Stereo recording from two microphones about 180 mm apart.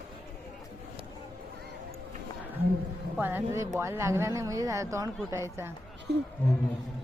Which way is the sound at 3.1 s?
10° right (ahead or behind).